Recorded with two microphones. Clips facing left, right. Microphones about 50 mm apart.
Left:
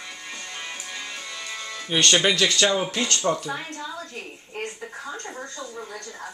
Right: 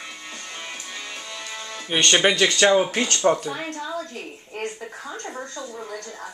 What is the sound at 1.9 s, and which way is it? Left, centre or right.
Speech, centre.